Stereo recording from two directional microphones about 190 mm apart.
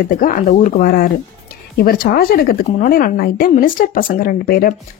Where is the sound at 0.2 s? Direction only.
45° left (ahead or behind).